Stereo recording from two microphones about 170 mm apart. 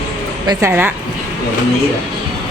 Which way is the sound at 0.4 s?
15° right (ahead or behind).